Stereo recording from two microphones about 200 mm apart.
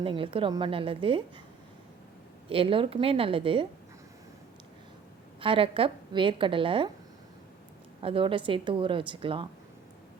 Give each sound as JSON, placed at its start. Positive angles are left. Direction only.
{"t": 0.0, "sound": "a woman's voice", "side_deg": -25}
{"t": 2.5, "sound": "a woman's voice", "side_deg": -25}
{"t": 5.4, "sound": "a woman's voice", "side_deg": -25}
{"t": 8.0, "sound": "a woman's voice", "side_deg": -25}